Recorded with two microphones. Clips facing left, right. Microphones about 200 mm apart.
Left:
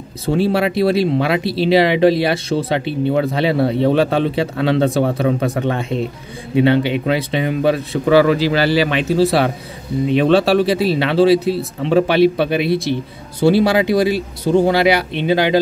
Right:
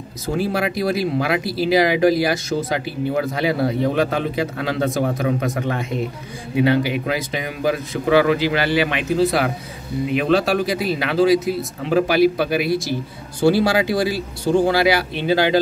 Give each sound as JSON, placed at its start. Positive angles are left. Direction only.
{"t": 0.3, "sound": "speech", "side_deg": 30}